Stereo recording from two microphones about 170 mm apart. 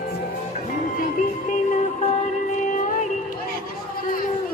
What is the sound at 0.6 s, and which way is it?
Music, 50° left (ahead or behind).